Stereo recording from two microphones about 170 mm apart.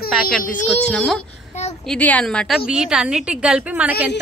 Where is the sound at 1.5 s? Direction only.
40° left (ahead or behind).